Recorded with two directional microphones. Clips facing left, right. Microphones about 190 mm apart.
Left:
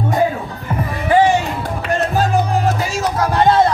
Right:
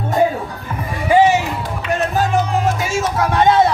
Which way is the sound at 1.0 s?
10° right (ahead or behind).